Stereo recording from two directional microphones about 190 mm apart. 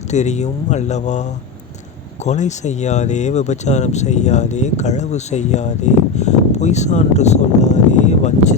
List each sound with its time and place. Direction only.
0.1 s speech: 35° left (ahead or behind)
2.2 s speech: 40° left (ahead or behind)